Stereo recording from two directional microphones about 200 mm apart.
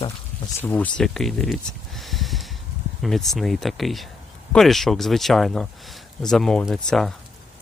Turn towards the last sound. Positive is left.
turn(degrees=0)  # may be behind; listen again after turning